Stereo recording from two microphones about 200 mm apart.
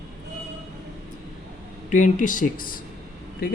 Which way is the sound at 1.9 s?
40° left (ahead or behind).